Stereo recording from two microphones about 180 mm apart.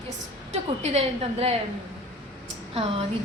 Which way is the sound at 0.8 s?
35° right (ahead or behind).